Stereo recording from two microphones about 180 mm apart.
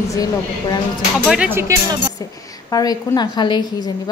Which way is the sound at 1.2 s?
5° right (ahead or behind).